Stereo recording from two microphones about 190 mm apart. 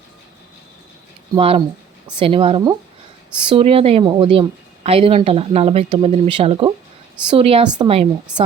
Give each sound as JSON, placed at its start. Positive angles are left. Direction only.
{"t": 1.4, "sound": "a woman's voice", "side_deg": -30}